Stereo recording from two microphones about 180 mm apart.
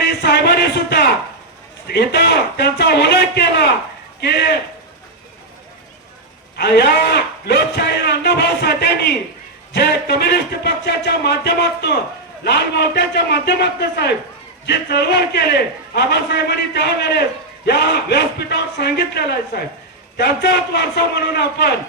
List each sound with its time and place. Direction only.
0.2 s a sound: 65° left (ahead or behind)
1.9 s a man's voice: 65° left (ahead or behind)
6.6 s a man's voice: 65° left (ahead or behind)